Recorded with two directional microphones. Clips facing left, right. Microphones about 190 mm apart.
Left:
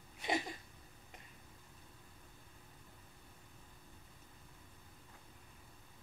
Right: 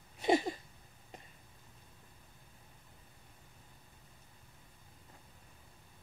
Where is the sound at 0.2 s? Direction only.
30° right (ahead or behind).